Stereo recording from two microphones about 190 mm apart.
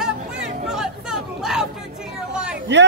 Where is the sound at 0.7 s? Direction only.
5° right (ahead or behind).